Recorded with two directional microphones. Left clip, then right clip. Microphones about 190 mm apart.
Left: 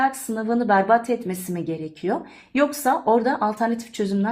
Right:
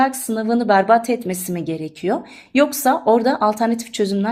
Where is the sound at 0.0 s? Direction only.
30° right (ahead or behind).